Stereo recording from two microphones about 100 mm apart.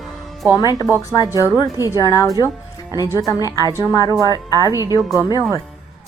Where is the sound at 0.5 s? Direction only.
40° left (ahead or behind).